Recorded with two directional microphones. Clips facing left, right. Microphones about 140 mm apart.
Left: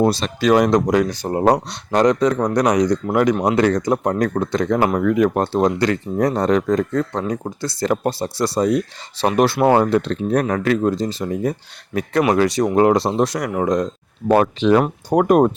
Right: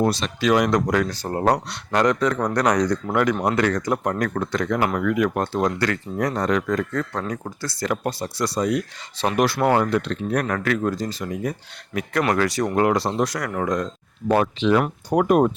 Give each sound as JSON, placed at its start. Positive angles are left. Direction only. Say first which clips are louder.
{"t": 0.0, "sound": "speech", "louder": "left 4 dB", "side_deg": 30}
{"t": 14.3, "sound": "speech", "louder": "left 4 dB", "side_deg": 50}